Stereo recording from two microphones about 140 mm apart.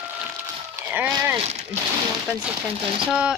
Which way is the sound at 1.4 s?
50° right (ahead or behind).